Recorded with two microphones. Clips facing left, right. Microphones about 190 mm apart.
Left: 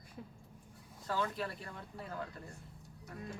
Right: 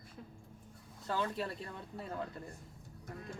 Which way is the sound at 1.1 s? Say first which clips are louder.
Even; 25° right (ahead or behind).